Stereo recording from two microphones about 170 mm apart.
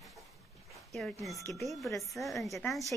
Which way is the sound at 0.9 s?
Centre (ahead or behind).